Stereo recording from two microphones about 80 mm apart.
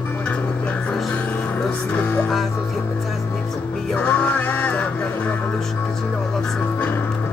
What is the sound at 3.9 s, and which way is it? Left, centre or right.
Music, centre.